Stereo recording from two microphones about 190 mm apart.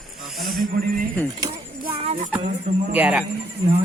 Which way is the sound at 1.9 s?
30° right (ahead or behind).